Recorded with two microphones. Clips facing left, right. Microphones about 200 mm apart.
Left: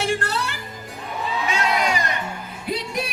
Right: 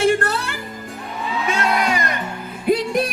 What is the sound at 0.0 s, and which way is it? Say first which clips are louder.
Music: right 6 dB; 50° right (ahead or behind).